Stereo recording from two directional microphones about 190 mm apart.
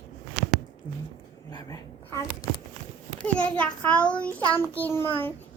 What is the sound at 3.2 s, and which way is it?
A child's voice, 5° left (ahead or behind).